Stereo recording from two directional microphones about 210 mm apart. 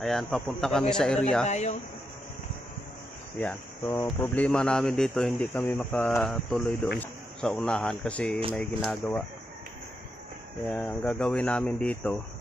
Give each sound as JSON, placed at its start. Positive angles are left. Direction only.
{"t": 0.0, "sound": "speech", "side_deg": 0}
{"t": 1.5, "sound": "speech", "side_deg": 35}
{"t": 3.3, "sound": "speech", "side_deg": 10}
{"t": 10.7, "sound": "speech", "side_deg": 5}